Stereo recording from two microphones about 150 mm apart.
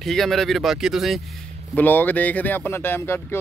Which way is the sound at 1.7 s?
10° left (ahead or behind).